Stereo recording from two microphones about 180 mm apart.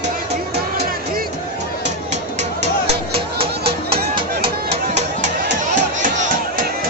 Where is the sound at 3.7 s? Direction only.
30° right (ahead or behind).